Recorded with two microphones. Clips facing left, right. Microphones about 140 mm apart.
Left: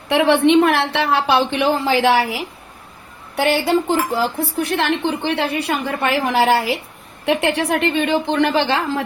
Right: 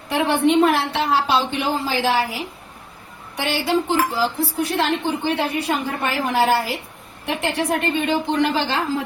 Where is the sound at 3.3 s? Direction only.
60° left (ahead or behind).